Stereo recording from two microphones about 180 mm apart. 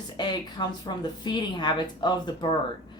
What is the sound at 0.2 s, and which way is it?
A woman's voice, 25° left (ahead or behind).